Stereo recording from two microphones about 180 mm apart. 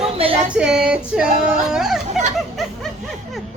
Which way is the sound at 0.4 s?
5° right (ahead or behind).